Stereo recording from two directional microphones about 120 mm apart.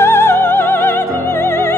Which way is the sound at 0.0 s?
20° left (ahead or behind).